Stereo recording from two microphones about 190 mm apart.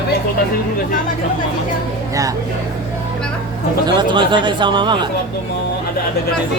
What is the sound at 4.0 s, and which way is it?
Speech, 25° right (ahead or behind).